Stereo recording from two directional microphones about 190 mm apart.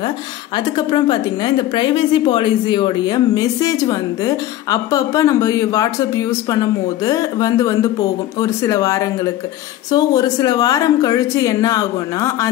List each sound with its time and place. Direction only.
0.7 s a woman's voice: 20° left (ahead or behind)